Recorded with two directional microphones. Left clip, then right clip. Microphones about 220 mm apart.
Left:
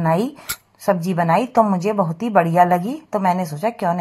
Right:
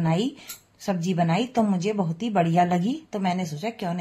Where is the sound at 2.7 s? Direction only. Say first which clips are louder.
Left 6 dB; centre (ahead or behind).